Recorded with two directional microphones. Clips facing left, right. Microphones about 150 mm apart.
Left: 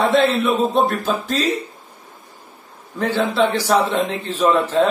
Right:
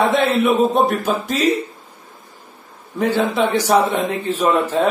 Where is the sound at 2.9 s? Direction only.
15° right (ahead or behind).